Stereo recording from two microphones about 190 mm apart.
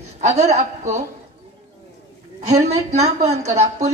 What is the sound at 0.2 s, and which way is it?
Speech, 35° right (ahead or behind).